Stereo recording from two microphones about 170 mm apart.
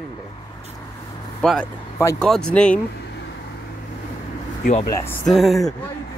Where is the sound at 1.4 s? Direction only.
5° left (ahead or behind).